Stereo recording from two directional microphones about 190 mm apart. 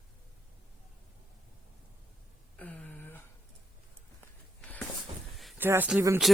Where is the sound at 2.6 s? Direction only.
10° left (ahead or behind).